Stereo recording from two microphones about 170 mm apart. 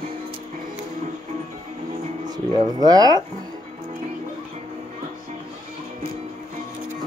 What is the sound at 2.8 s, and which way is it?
Speech, 20° right (ahead or behind).